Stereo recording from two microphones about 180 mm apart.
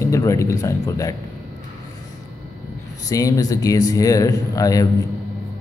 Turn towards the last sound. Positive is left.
turn(degrees=20)  # may be behind; listen again after turning